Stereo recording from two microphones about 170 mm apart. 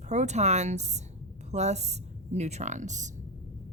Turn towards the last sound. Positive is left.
turn(degrees=-45)  # may be behind; listen again after turning